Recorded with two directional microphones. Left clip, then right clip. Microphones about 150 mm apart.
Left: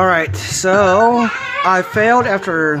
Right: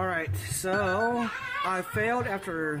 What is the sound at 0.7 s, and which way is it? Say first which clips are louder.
Speech: left 16 dB; 15° left (ahead or behind).